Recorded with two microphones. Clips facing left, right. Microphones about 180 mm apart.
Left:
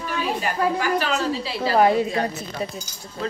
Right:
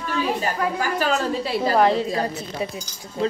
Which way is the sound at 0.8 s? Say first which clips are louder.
Even; 45° right (ahead or behind).